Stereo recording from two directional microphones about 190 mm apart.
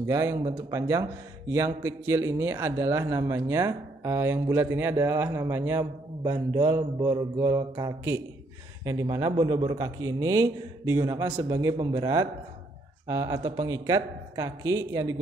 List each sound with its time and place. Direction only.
0.0 s a man's voice: 15° right (ahead or behind)